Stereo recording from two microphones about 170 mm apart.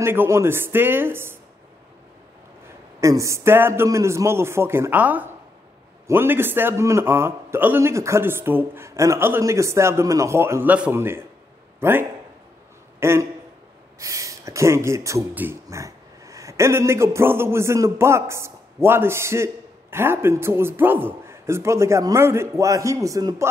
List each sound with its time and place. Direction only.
0.0 s a man's voice: 15° right (ahead or behind)
3.0 s a man's voice: 20° right (ahead or behind)